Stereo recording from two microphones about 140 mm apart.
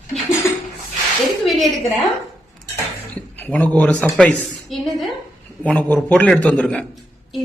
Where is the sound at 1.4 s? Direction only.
Centre (ahead or behind).